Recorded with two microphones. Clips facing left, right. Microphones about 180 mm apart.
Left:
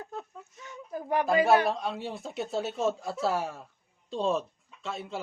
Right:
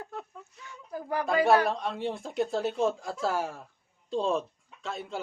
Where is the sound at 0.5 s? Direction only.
20° left (ahead or behind).